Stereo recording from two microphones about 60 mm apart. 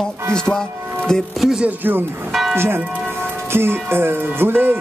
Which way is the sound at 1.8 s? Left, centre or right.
Right.